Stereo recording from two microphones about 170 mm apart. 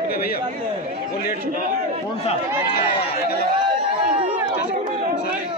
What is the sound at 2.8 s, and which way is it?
Speech, 65° left (ahead or behind).